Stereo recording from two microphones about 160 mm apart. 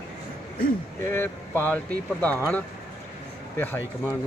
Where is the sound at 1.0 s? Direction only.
15° left (ahead or behind).